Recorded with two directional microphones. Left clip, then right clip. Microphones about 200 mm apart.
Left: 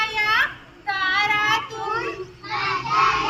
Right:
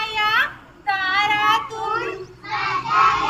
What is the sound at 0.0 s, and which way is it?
Children playing, 5° right (ahead or behind).